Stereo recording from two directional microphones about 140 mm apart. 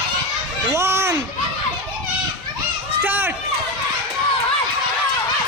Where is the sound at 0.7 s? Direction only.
20° right (ahead or behind).